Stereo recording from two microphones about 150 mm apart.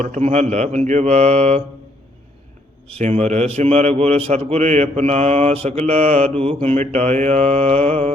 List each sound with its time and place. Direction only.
0.0 s a man's voice: 50° right (ahead or behind)
2.9 s a man's voice: 50° right (ahead or behind)